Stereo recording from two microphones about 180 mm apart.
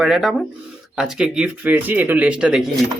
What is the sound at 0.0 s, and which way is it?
Speech, centre (ahead or behind).